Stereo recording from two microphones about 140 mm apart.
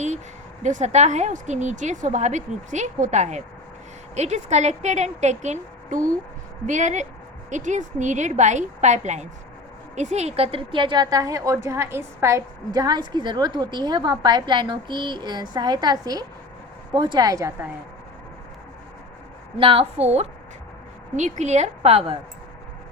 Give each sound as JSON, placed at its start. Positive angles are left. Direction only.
{"t": 0.6, "sound": "a woman's voice", "side_deg": -60}
{"t": 19.5, "sound": "a woman's voice", "side_deg": -40}
{"t": 21.2, "sound": "a woman's voice", "side_deg": -60}